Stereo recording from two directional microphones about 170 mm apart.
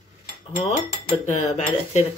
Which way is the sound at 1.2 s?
40° left (ahead or behind).